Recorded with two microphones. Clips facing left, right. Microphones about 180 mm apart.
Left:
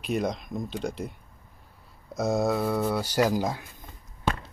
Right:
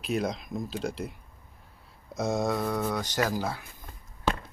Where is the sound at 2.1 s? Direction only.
Centre (ahead or behind).